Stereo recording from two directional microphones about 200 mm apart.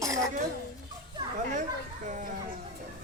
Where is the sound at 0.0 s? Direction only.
15° right (ahead or behind).